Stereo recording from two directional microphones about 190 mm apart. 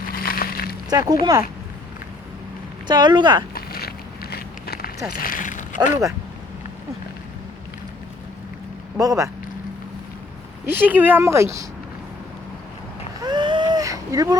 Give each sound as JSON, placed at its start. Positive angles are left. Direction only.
{"t": 0.1, "sound": "a sound", "side_deg": 50}
{"t": 0.9, "sound": "speech", "side_deg": -20}
{"t": 2.8, "sound": "speech", "side_deg": -25}
{"t": 3.5, "sound": "walk", "side_deg": 55}
{"t": 5.1, "sound": "speech", "side_deg": 50}
{"t": 9.0, "sound": "speech", "side_deg": -15}
{"t": 10.7, "sound": "speech", "side_deg": -10}
{"t": 13.2, "sound": "vehicle", "side_deg": -25}